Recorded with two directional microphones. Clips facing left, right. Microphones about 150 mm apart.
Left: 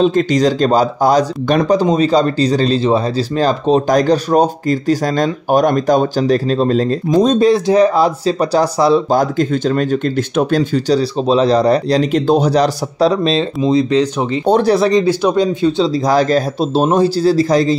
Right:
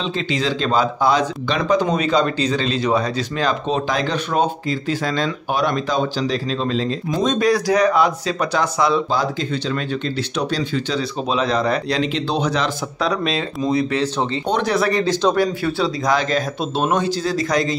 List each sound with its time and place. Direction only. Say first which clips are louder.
0.0 s speech: left 10 dB; 45° left (ahead or behind)
1.8 s speech: left 5 dB; 30° left (ahead or behind)
9.1 s speech: left 7 dB; 50° left (ahead or behind); by 14.5 s 15° left (ahead or behind)
14.5 s speech: left 8 dB; 35° left (ahead or behind)
14.9 s speech: left 5 dB; 15° left (ahead or behind)
16.1 s speech: left 6 dB; 40° left (ahead or behind)